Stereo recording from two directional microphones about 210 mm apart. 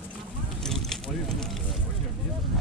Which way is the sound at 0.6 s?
Centre (ahead or behind).